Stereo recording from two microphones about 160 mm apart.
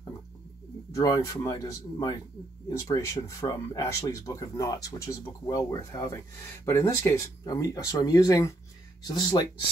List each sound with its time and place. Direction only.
0.9 s speech: 20° left (ahead or behind)